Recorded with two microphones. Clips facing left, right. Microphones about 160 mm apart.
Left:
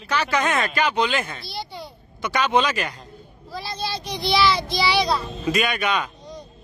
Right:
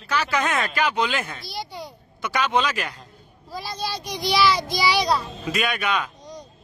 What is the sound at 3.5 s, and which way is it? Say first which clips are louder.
Child singing: left 1 dB; 10° right (ahead or behind).